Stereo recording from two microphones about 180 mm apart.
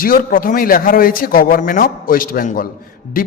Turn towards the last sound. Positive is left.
turn(degrees=50)  # may be behind; listen again after turning